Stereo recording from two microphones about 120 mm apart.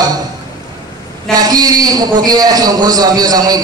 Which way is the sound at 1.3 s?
30° right (ahead or behind).